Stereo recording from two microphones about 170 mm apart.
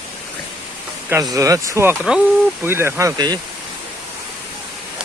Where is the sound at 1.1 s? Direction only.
20° right (ahead or behind).